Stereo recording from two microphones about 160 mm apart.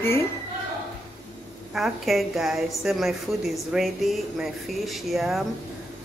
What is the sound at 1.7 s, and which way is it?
A woman's voice, centre (ahead or behind).